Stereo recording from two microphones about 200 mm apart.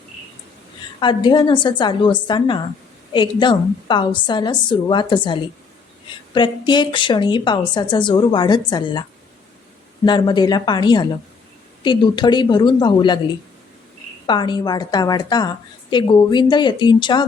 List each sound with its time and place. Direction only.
0.9 s a woman's voice: 25° left (ahead or behind)
10.1 s a woman's voice: 20° left (ahead or behind)
14.3 s a woman's voice: 20° left (ahead or behind)